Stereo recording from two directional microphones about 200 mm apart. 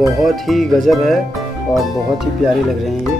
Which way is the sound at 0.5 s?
Centre (ahead or behind).